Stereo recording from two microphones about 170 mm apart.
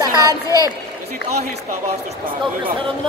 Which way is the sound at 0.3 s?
20° left (ahead or behind).